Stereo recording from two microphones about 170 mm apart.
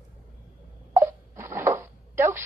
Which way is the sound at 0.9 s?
15° right (ahead or behind).